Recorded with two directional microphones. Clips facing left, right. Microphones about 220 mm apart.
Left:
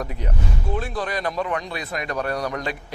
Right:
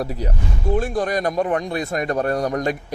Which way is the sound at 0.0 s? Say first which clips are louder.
Right 4 dB; 35° right (ahead or behind).